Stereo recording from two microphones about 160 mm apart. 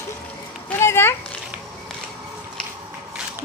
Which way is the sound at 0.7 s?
15° left (ahead or behind).